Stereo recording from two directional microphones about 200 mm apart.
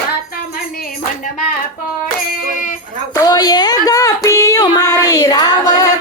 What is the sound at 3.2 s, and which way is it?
Speech, 20° left (ahead or behind).